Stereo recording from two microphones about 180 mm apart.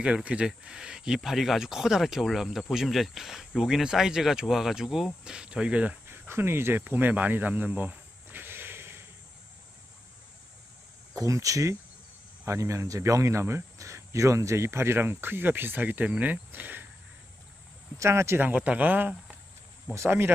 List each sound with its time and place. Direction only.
0.0 s speech: 5° right (ahead or behind)
11.1 s speech: 20° right (ahead or behind)
17.9 s speech: 15° right (ahead or behind)